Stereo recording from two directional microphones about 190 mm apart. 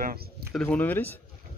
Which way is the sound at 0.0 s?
55° right (ahead or behind).